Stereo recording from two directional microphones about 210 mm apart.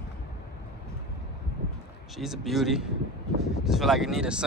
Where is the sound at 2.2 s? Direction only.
Centre (ahead or behind).